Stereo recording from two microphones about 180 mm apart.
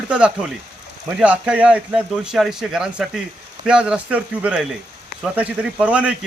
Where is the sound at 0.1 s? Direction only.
5° right (ahead or behind).